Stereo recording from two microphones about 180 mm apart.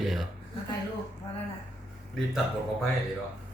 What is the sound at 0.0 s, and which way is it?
Speech, centre (ahead or behind).